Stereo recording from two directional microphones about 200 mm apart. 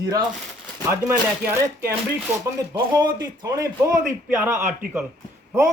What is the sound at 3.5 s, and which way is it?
A man's voice, 15° right (ahead or behind).